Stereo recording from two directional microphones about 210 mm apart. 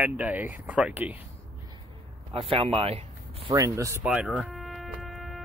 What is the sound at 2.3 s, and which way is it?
Speech, 25° right (ahead or behind).